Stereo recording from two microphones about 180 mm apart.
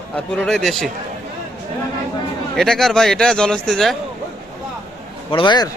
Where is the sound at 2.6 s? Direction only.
Centre (ahead or behind).